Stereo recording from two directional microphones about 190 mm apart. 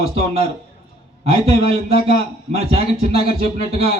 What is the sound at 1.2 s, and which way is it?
Speech, 30° right (ahead or behind).